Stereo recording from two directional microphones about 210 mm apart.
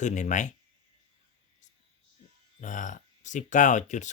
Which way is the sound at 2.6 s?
35° left (ahead or behind).